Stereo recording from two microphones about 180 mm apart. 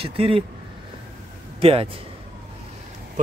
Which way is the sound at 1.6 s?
30° right (ahead or behind).